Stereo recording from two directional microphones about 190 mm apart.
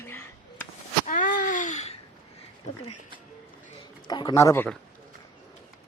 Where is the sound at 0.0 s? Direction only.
10° left (ahead or behind).